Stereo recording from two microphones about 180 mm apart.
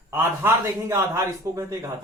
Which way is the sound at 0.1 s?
10° right (ahead or behind).